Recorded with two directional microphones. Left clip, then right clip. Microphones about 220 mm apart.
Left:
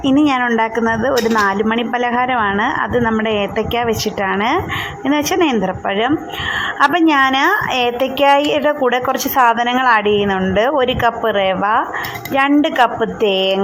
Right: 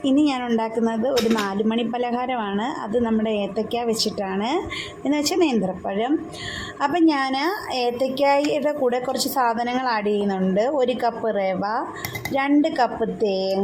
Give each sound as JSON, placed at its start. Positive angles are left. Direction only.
{"t": 0.0, "sound": "speech", "side_deg": 5}
{"t": 5.0, "sound": "speech", "side_deg": 5}
{"t": 6.7, "sound": "a woman's voice", "side_deg": 5}
{"t": 13.2, "sound": "speech", "side_deg": 25}